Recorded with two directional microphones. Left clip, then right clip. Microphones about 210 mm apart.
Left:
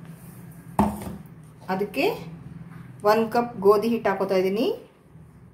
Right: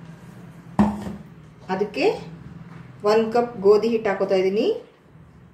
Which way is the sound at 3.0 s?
30° left (ahead or behind).